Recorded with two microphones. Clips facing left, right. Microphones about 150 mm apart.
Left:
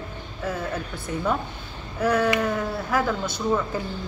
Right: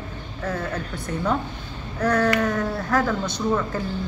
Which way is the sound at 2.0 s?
5° left (ahead or behind).